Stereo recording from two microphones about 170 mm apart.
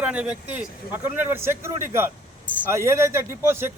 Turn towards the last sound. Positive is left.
turn(degrees=-15)  # may be behind; listen again after turning